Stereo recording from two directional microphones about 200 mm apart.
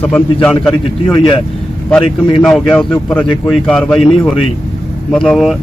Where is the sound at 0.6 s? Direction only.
5° left (ahead or behind).